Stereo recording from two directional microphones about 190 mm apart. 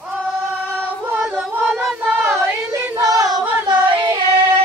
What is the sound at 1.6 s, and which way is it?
Child singing, 5° right (ahead or behind).